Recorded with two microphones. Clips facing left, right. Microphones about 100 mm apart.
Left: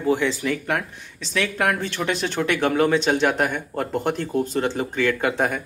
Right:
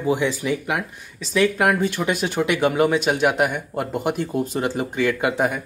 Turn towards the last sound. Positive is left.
turn(degrees=-5)  # may be behind; listen again after turning